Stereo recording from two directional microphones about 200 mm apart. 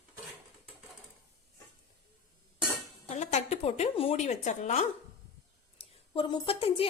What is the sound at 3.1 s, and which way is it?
A woman's voice, 35° left (ahead or behind).